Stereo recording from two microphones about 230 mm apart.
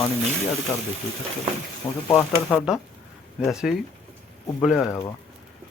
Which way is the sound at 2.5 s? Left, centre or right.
Centre.